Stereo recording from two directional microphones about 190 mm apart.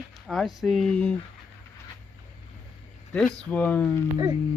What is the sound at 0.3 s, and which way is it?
Speech, centre (ahead or behind).